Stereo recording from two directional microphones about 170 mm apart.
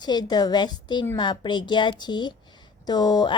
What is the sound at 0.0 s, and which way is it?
Speech, 25° left (ahead or behind).